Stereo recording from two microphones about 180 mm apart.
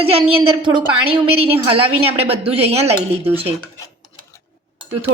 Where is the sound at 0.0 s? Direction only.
30° right (ahead or behind).